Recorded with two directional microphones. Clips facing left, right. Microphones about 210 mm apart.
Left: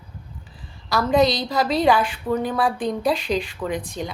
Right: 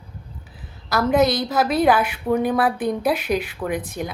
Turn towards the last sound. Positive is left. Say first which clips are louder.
# right 1 dB
turn(degrees=-5)  # may be behind; listen again after turning